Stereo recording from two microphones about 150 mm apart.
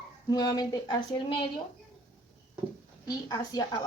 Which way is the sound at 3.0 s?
25° left (ahead or behind).